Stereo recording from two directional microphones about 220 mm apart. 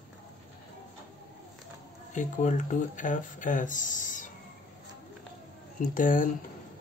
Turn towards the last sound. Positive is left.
turn(degrees=40)  # may be behind; listen again after turning